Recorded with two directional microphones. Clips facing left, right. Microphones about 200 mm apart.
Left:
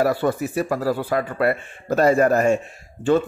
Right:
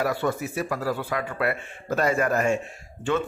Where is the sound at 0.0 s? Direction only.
35° left (ahead or behind).